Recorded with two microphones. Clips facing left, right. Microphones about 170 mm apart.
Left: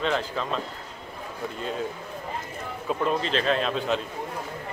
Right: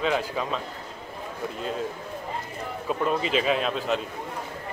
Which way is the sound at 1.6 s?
Centre (ahead or behind).